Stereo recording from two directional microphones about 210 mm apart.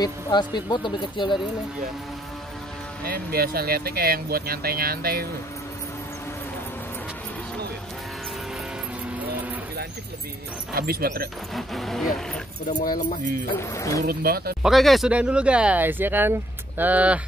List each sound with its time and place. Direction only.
0.0 s speech: 20° left (ahead or behind)
3.1 s speech: 45° right (ahead or behind)
10.7 s speech: 45° right (ahead or behind)
11.5 s speech: centre (ahead or behind)
12.7 s music: 45° left (ahead or behind)
13.6 s speech: 15° left (ahead or behind)
14.0 s speech: 45° right (ahead or behind)
14.6 s speech: centre (ahead or behind)